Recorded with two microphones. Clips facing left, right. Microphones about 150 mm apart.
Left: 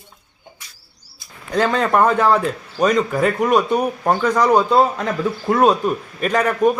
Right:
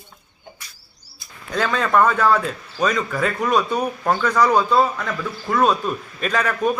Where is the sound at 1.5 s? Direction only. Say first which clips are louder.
Left 3 dB; 20° left (ahead or behind).